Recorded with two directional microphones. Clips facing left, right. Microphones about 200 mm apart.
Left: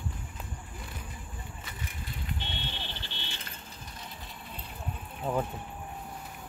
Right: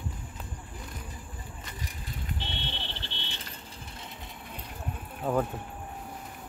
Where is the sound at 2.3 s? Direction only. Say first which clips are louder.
Right 1 dB; 30° right (ahead or behind).